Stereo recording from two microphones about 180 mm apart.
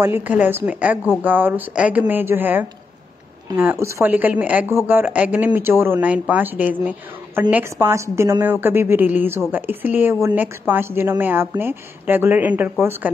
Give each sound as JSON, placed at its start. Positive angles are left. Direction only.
{"t": 0.0, "sound": "speech", "side_deg": -10}
{"t": 3.5, "sound": "speech", "side_deg": -20}
{"t": 3.8, "sound": "speech", "side_deg": -10}